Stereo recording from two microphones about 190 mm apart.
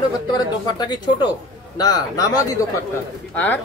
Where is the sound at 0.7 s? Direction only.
20° left (ahead or behind).